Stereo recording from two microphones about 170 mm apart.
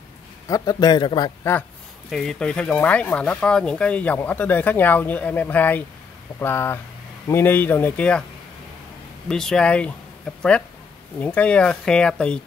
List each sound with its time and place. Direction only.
0.5 s a man's voice: 20° left (ahead or behind)
2.0 s speech: centre (ahead or behind)
9.3 s speech: 5° left (ahead or behind)
11.1 s speech: 10° left (ahead or behind)